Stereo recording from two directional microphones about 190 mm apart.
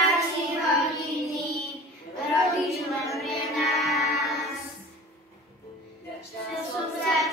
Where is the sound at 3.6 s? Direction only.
Centre (ahead or behind).